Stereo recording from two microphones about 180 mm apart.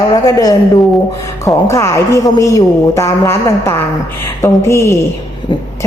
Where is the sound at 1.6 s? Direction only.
15° left (ahead or behind).